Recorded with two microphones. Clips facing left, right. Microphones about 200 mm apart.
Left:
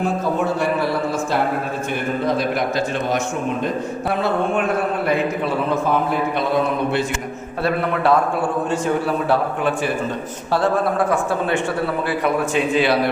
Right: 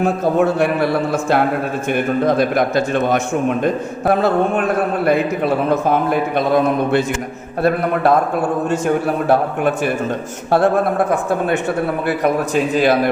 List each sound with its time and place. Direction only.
0.0 s a man's voice: 65° right (ahead or behind)
7.6 s a man's voice: 45° right (ahead or behind)
12.0 s a man's voice: 45° right (ahead or behind)